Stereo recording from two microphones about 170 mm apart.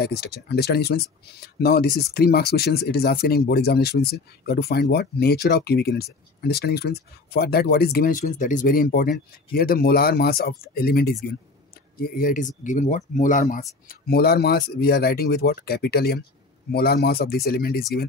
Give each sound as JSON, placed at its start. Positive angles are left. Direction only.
{"t": 0.0, "sound": "speech", "side_deg": 70}
{"t": 12.0, "sound": "speech", "side_deg": 55}